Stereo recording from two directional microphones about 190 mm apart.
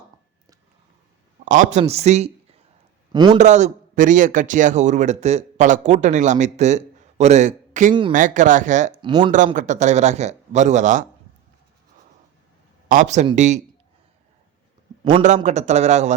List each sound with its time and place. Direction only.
1.5 s a man's voice: 40° right (ahead or behind)
3.1 s a man's voice: 25° right (ahead or behind)
3.3 s a man's voice: 40° right (ahead or behind)
9.0 s speech: 25° right (ahead or behind)
9.6 s a man's voice: 40° right (ahead or behind)
12.9 s a man's voice: 40° right (ahead or behind)
15.4 s a man's voice: 35° right (ahead or behind)